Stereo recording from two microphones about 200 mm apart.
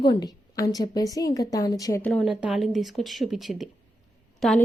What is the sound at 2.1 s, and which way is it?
Speech, 5° right (ahead or behind).